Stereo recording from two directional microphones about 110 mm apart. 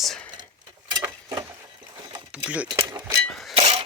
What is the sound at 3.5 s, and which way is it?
Chink, 65° right (ahead or behind).